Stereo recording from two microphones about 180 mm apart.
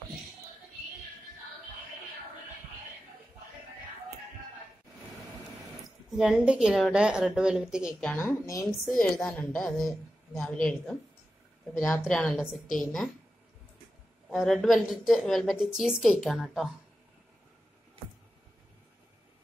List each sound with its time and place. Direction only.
6.1 s a woman's voice: 5° right (ahead or behind)
8.1 s speech: 10° left (ahead or behind)
8.8 s a woman's voice: 5° left (ahead or behind)
14.3 s a woman's voice: centre (ahead or behind)